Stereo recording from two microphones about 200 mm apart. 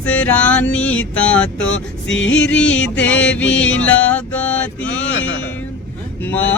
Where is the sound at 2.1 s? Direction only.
70° left (ahead or behind).